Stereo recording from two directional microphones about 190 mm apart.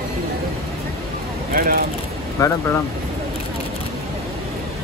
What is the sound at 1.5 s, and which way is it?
Speech, 50° right (ahead or behind).